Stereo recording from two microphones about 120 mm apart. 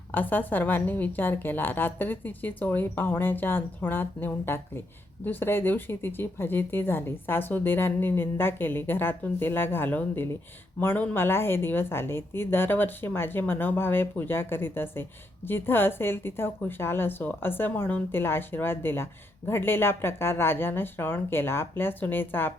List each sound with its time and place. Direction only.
0.1 s a woman's voice: 15° left (ahead or behind)